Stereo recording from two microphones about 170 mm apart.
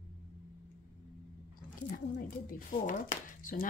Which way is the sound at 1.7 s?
55° left (ahead or behind).